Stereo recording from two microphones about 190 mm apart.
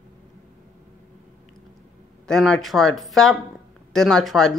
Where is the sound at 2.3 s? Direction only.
Centre (ahead or behind).